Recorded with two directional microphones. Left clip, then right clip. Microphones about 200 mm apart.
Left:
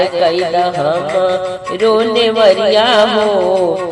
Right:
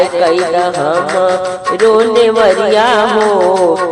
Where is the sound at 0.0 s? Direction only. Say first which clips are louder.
Right 2 dB; 25° right (ahead or behind).